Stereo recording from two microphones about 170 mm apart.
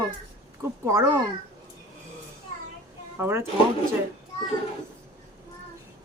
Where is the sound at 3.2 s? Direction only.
15° right (ahead or behind).